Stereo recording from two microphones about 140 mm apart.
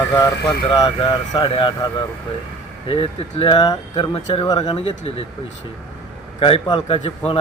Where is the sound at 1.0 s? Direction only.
40° left (ahead or behind).